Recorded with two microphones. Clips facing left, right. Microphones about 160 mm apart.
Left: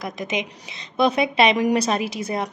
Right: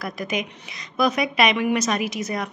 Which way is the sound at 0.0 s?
20° left (ahead or behind).